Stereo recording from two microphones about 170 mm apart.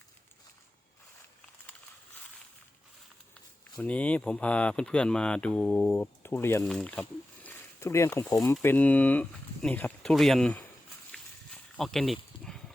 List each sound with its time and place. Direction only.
3.8 s speech: 10° left (ahead or behind)
7.4 s speech: 15° left (ahead or behind)
11.1 s a sound: 5° left (ahead or behind)